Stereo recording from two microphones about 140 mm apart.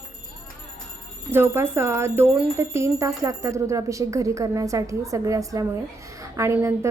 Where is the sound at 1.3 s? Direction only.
15° right (ahead or behind).